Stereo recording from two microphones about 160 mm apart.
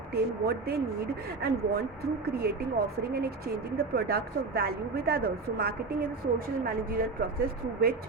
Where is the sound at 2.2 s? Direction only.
70° right (ahead or behind).